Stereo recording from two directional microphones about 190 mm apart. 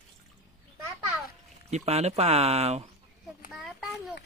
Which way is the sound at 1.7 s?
35° right (ahead or behind).